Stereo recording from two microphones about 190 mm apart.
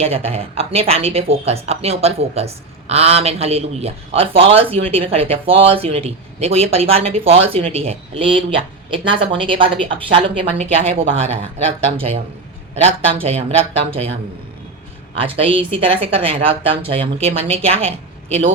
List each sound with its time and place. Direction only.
0.0 s a man's voice: 30° right (ahead or behind)
15.1 s a man's voice: 30° right (ahead or behind)